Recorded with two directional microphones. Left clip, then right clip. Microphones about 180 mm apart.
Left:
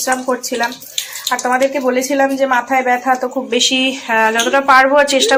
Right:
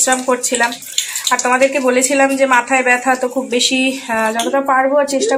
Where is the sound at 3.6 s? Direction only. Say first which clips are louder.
Left 2 dB; 20° left (ahead or behind).